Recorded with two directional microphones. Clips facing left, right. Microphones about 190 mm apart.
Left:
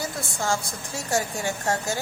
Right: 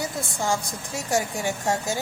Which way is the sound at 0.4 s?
15° right (ahead or behind).